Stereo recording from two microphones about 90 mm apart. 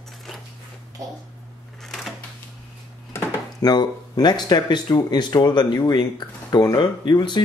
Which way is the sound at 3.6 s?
50° left (ahead or behind).